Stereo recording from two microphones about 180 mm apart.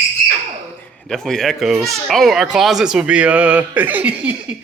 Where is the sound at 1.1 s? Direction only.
5° left (ahead or behind).